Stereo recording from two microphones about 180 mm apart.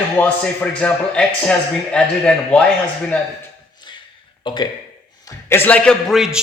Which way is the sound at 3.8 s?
25° left (ahead or behind).